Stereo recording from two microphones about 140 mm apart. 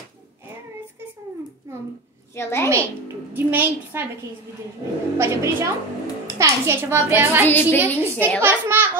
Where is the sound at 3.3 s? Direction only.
15° right (ahead or behind).